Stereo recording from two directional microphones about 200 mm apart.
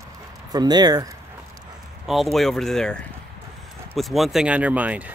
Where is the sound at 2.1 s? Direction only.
Centre (ahead or behind).